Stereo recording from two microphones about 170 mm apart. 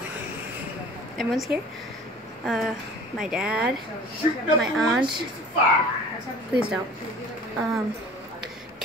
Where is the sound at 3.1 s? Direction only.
5° right (ahead or behind).